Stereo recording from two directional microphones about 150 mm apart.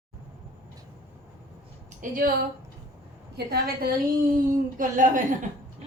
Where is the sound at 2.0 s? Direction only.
65° right (ahead or behind).